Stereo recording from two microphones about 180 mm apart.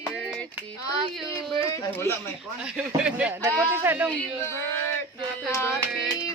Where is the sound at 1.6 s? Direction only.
15° left (ahead or behind).